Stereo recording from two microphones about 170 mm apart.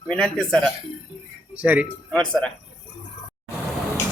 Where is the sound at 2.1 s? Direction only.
5° left (ahead or behind).